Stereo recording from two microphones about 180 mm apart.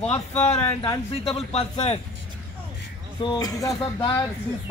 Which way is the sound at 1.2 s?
35° left (ahead or behind).